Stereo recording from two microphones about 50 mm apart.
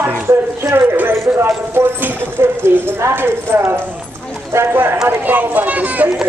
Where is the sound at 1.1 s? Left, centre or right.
Right.